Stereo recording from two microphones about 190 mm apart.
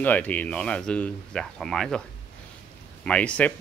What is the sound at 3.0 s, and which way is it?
Speech, 5° left (ahead or behind).